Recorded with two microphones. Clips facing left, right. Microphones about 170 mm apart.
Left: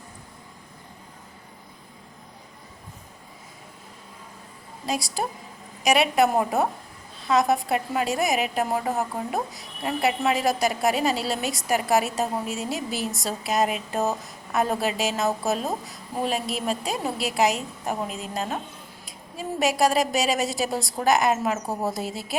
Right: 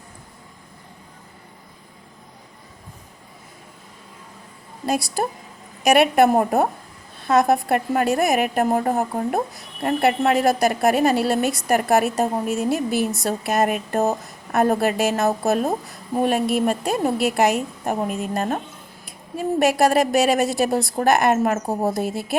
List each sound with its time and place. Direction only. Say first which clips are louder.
4.9 s a woman's voice: right 5 dB; 55° right (ahead or behind)